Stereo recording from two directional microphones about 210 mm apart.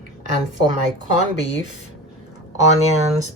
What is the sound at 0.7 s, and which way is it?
Speech, 35° right (ahead or behind).